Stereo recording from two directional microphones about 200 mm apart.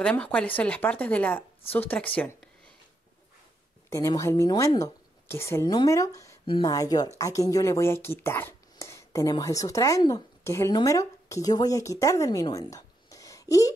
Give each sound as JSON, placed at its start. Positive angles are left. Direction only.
{"t": 0.0, "sound": "speech", "side_deg": 5}
{"t": 3.9, "sound": "speech", "side_deg": 15}